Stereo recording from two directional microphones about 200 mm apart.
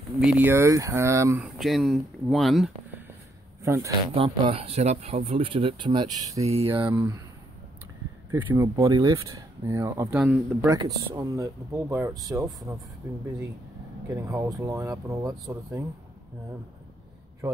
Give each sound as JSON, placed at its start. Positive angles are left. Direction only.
{"t": 0.2, "sound": "speech", "side_deg": -5}
{"t": 3.6, "sound": "speech", "side_deg": -15}
{"t": 4.1, "sound": "speech", "side_deg": -30}
{"t": 6.9, "sound": "speech", "side_deg": -15}
{"t": 8.3, "sound": "speech", "side_deg": -25}
{"t": 14.0, "sound": "speech", "side_deg": -15}